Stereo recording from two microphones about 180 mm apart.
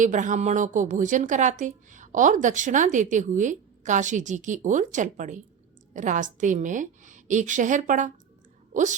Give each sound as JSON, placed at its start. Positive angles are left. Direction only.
{"t": 0.0, "sound": "a woman's voice", "side_deg": -45}